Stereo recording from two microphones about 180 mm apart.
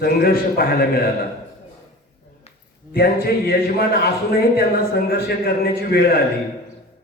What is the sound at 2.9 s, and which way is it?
A man's voice, 55° left (ahead or behind).